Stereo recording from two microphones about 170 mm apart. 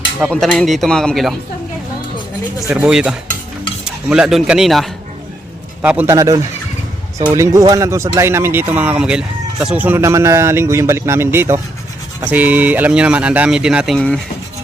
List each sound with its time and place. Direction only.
0.3 s speech: centre (ahead or behind)
2.6 s speech: 5° right (ahead or behind)